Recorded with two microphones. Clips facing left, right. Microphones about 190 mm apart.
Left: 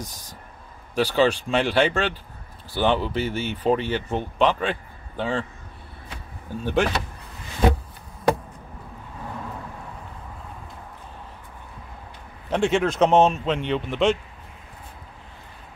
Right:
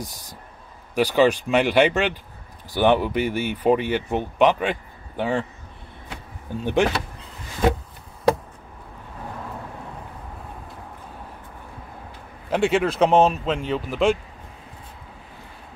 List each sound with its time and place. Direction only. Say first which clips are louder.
0.0 s speech: right 2 dB; 15° left (ahead or behind)
0.9 s speech: right 2 dB; 10° right (ahead or behind)
6.6 s speech: right 2 dB; 15° right (ahead or behind)
12.4 s a man's voice: right 1 dB; 5° right (ahead or behind)